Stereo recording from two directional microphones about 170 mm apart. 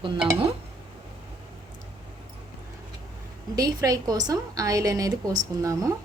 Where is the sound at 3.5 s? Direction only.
20° right (ahead or behind).